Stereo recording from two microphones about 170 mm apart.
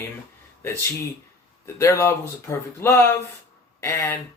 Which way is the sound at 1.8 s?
15° left (ahead or behind).